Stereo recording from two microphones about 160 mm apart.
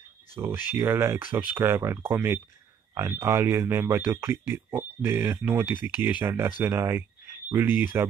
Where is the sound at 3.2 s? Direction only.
20° right (ahead or behind).